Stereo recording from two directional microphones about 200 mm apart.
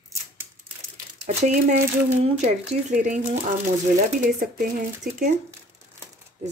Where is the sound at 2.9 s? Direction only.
35° right (ahead or behind).